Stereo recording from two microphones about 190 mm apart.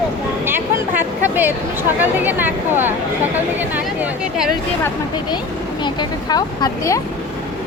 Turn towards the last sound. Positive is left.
turn(degrees=20)  # may be behind; listen again after turning